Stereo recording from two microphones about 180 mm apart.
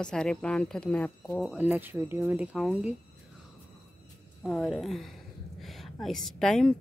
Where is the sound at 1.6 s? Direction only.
10° right (ahead or behind).